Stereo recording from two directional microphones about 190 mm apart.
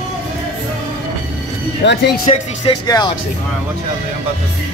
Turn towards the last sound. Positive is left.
turn(degrees=20)  # may be behind; listen again after turning